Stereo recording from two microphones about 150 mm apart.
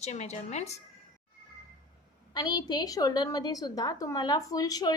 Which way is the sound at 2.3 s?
25° left (ahead or behind).